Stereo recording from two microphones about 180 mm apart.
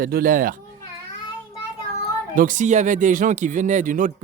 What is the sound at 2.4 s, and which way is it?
Speech, 45° right (ahead or behind).